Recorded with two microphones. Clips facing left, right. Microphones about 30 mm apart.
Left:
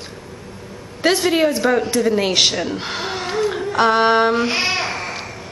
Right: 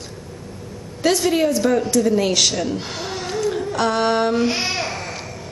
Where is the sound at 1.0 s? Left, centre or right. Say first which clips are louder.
Left 2 dB; left.